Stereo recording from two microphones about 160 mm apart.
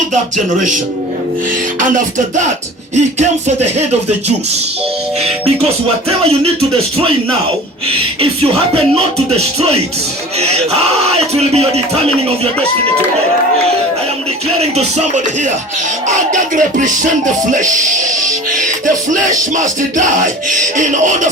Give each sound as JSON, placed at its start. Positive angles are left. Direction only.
{"t": 0.1, "sound": "music", "side_deg": -50}
{"t": 1.8, "sound": "music", "side_deg": -50}
{"t": 9.1, "sound": "a sound", "side_deg": -40}
{"t": 14.6, "sound": "music", "side_deg": -45}
{"t": 16.3, "sound": "music", "side_deg": -55}